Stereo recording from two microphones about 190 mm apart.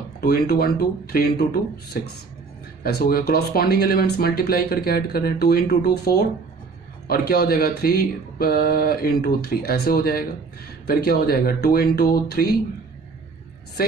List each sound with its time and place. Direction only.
0.2 s speech: 55° left (ahead or behind)